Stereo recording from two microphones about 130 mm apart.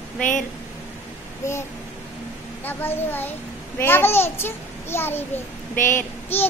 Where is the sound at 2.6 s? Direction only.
15° left (ahead or behind).